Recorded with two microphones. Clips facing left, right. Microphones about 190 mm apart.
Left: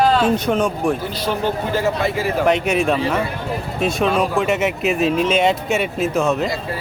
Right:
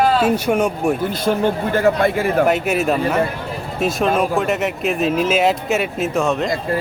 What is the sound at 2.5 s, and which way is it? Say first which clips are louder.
Speech: even; 5° right (ahead or behind).